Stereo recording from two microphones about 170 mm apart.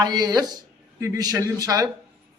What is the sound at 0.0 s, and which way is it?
A man's voice, 25° right (ahead or behind).